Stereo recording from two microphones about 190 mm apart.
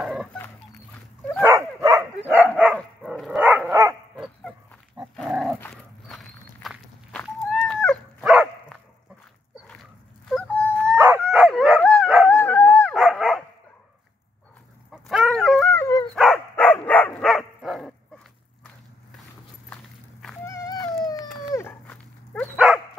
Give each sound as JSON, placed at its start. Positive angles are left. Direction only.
{"t": 0.0, "sound": "a sound", "side_deg": -5}
{"t": 1.4, "sound": "dog", "side_deg": -15}
{"t": 2.6, "sound": "dog", "side_deg": -5}
{"t": 4.2, "sound": "chicken", "side_deg": 0}
{"t": 5.1, "sound": "dog", "side_deg": 0}
{"t": 5.6, "sound": "walk", "side_deg": 5}
{"t": 8.2, "sound": "dog", "side_deg": -5}
{"t": 10.2, "sound": "a sound", "side_deg": 5}
{"t": 11.0, "sound": "dog", "side_deg": -10}
{"t": 14.9, "sound": "chicken", "side_deg": 0}
{"t": 16.2, "sound": "dog", "side_deg": 5}
{"t": 19.7, "sound": "walk", "side_deg": 0}
{"t": 20.4, "sound": "a sound", "side_deg": 15}
{"t": 21.5, "sound": "dog", "side_deg": 15}